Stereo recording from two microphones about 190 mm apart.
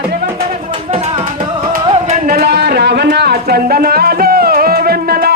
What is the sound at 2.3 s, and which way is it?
Music, 55° right (ahead or behind).